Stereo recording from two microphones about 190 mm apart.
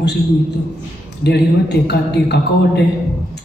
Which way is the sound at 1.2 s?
60° left (ahead or behind).